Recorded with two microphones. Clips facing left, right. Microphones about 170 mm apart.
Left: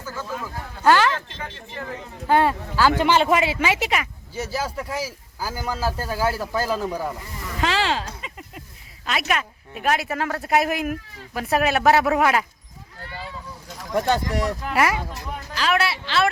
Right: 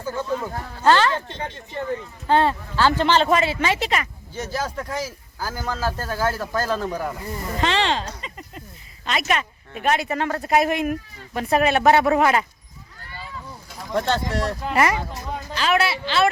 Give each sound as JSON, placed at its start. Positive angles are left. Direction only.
{"t": 0.0, "sound": "speech", "side_deg": -25}
{"t": 0.9, "sound": "speech", "side_deg": 10}
{"t": 2.2, "sound": "speech", "side_deg": 10}
{"t": 7.6, "sound": "a sound", "side_deg": 5}
{"t": 9.0, "sound": "speech", "side_deg": 5}
{"t": 13.9, "sound": "speech", "side_deg": 15}
{"t": 14.7, "sound": "speech", "side_deg": 5}